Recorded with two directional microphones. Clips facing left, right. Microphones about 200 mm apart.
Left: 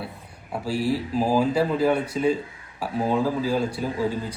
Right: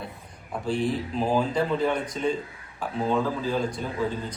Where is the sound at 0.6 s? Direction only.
5° left (ahead or behind).